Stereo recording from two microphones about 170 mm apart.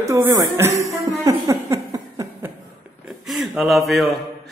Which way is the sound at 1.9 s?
20° right (ahead or behind).